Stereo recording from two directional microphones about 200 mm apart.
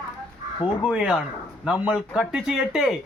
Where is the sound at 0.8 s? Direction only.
5° right (ahead or behind).